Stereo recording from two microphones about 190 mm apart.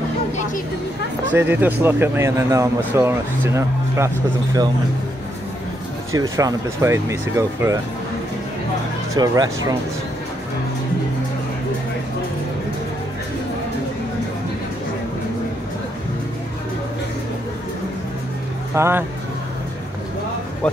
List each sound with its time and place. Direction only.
1.3 s speech: 10° right (ahead or behind)
6.1 s speech: 20° right (ahead or behind)
9.1 s speech: 20° right (ahead or behind)
18.8 s speech: 15° right (ahead or behind)